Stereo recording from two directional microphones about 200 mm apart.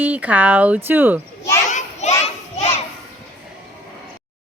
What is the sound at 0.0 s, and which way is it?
Speech, 10° right (ahead or behind).